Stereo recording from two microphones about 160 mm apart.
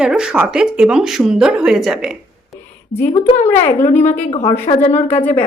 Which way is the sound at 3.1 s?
40° left (ahead or behind).